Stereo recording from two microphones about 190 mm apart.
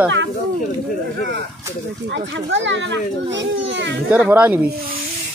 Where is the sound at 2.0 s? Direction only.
70° right (ahead or behind).